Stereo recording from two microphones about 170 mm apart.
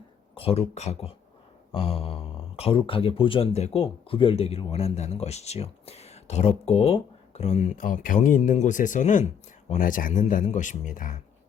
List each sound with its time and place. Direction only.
0.3 s speech: 35° left (ahead or behind)